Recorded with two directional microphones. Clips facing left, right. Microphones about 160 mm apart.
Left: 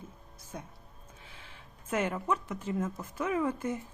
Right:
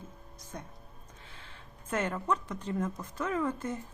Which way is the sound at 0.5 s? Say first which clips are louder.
Left 1 dB; 10° left (ahead or behind).